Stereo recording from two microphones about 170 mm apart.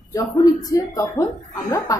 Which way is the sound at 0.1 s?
20° left (ahead or behind).